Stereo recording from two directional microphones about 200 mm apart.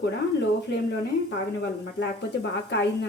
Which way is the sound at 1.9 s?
60° left (ahead or behind).